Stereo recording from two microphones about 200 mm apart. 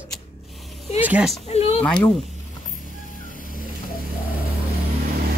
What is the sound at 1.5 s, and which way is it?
Speech, 30° left (ahead or behind).